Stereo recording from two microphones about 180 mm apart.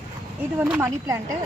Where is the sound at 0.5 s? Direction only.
15° right (ahead or behind).